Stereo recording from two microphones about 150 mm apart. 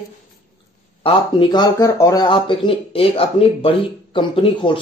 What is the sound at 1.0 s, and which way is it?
Speech, 30° left (ahead or behind).